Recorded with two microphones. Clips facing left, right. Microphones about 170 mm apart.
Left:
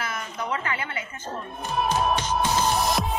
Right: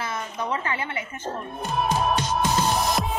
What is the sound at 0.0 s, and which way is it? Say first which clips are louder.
A woman's voice: right 2 dB; 25° right (ahead or behind).